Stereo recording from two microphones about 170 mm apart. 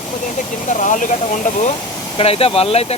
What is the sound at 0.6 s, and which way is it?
Speech, 45° left (ahead or behind).